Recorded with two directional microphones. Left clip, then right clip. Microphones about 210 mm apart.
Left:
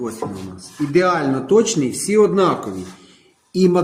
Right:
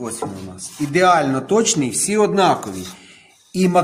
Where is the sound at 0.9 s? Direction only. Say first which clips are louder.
Right 3 dB; 65° right (ahead or behind).